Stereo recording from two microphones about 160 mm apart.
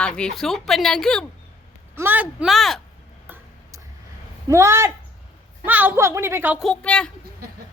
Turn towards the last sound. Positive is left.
turn(degrees=5)  # may be behind; listen again after turning